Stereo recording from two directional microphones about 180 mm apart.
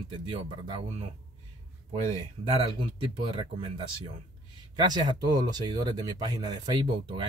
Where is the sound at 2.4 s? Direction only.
30° right (ahead or behind).